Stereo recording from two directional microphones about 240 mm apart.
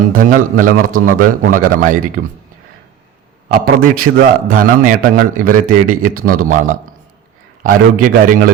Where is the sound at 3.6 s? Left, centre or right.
Right.